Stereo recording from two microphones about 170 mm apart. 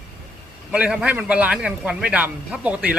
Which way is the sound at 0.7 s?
5° right (ahead or behind).